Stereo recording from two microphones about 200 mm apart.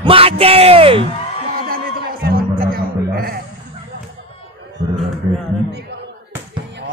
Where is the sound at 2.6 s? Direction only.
50° right (ahead or behind).